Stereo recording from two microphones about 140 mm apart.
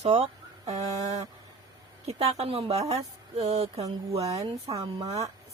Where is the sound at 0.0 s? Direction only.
50° right (ahead or behind).